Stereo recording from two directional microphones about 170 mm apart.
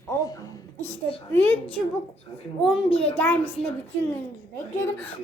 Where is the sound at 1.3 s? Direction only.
10° left (ahead or behind).